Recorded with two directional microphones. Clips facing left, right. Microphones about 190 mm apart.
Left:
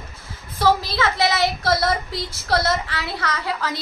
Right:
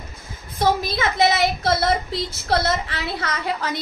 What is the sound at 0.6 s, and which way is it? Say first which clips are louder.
A woman's voice: left 1 dB; 20° right (ahead or behind).